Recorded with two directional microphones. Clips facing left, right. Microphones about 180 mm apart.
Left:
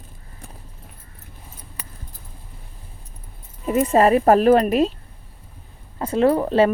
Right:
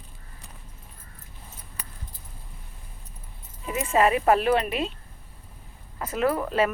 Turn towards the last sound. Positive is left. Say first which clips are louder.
# left 7 dB
turn(degrees=30)  # may be behind; listen again after turning